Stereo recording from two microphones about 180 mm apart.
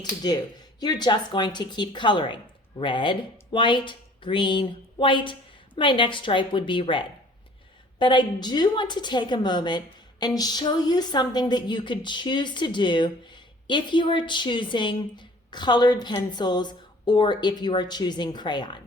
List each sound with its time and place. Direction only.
0.0 s a woman's voice: 20° left (ahead or behind)